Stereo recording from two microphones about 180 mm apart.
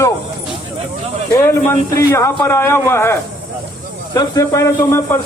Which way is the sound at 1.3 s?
15° left (ahead or behind).